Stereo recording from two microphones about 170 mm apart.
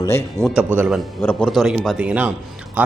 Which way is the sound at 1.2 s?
10° left (ahead or behind).